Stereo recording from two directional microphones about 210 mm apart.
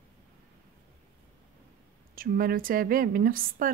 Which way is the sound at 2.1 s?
45° right (ahead or behind).